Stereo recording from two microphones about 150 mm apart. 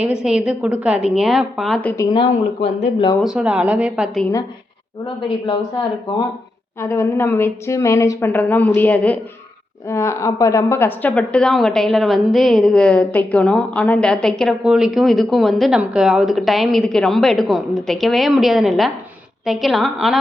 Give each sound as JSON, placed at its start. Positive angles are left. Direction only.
{"t": 0.0, "sound": "a woman's voice", "side_deg": -5}
{"t": 1.8, "sound": "a woman's voice", "side_deg": 10}
{"t": 2.1, "sound": "speech", "side_deg": 35}
{"t": 3.2, "sound": "a woman's voice", "side_deg": -5}
{"t": 6.7, "sound": "a woman's voice", "side_deg": 15}